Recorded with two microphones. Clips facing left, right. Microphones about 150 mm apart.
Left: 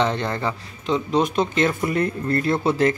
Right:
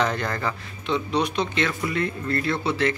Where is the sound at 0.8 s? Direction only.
40° left (ahead or behind).